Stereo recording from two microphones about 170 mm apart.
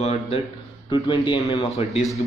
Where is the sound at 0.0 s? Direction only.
40° left (ahead or behind).